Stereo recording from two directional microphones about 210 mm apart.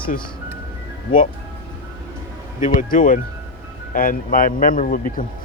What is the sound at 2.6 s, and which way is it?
A man's voice, 40° left (ahead or behind).